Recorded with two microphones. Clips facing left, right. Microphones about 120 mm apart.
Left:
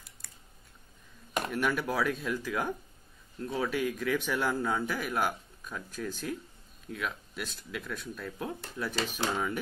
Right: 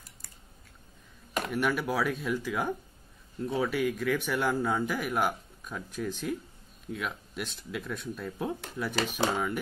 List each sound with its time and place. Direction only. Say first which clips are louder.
1.5 s speech: right 2 dB; 10° right (ahead or behind)
7.8 s speech: right 3 dB; centre (ahead or behind)
8.2 s speech: right 3 dB; 15° right (ahead or behind)